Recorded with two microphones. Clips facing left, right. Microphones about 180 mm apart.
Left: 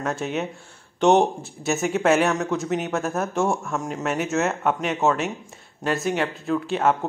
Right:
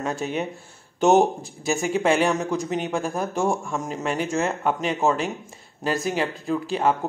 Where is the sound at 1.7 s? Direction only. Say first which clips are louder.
Left 1 dB; centre (ahead or behind).